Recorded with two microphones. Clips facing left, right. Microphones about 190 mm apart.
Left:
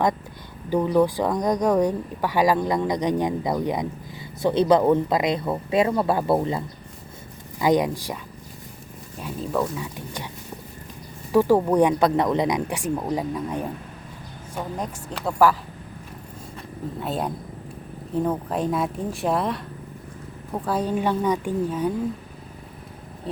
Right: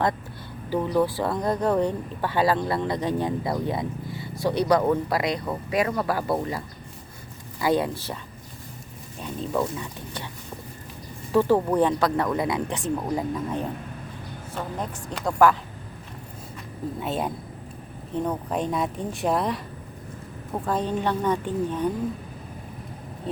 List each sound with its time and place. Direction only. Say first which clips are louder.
0.7 s speech: left 3 dB; 15° left (ahead or behind)
7.6 s speech: left 3 dB; 15° left (ahead or behind)
9.2 s speech: left 1 dB; centre (ahead or behind)
9.7 s speech: left 2 dB; 15° left (ahead or behind)
11.3 s speech: left 2 dB; 10° left (ahead or behind)
17.0 s speech: left 1 dB; centre (ahead or behind)
23.3 s a sound: even; centre (ahead or behind)